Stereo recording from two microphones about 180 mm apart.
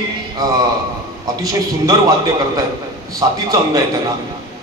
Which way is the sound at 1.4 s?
20° right (ahead or behind).